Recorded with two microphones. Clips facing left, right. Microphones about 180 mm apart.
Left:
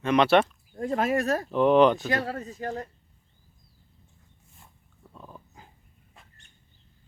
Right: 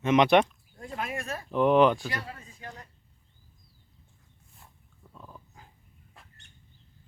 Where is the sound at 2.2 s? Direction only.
45° left (ahead or behind).